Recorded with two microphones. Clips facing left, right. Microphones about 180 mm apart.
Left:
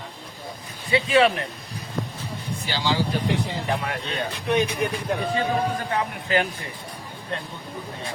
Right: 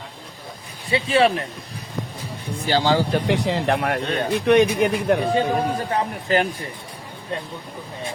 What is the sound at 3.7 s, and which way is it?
Speech, 55° right (ahead or behind).